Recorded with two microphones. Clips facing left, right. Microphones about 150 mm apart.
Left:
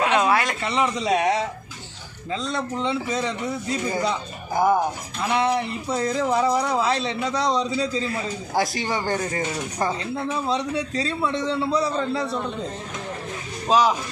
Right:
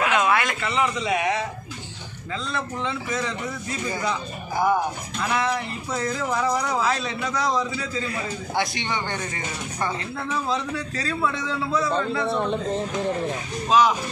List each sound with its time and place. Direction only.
0.0 s a man's voice: 30° left (ahead or behind)
5.2 s speech: 25° left (ahead or behind)
10.1 s speech: 25° left (ahead or behind)
13.7 s speech: 35° left (ahead or behind)